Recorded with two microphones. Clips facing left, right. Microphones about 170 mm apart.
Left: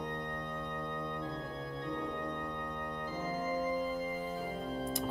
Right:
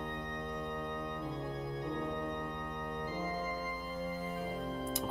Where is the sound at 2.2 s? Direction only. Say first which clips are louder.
Even; 15° right (ahead or behind).